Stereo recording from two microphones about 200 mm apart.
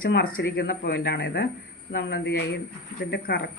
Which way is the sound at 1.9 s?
60° left (ahead or behind).